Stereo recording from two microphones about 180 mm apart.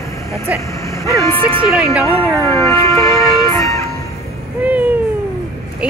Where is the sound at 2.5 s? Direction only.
15° left (ahead or behind).